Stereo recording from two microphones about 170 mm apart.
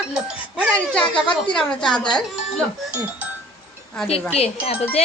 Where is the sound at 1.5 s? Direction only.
5° left (ahead or behind).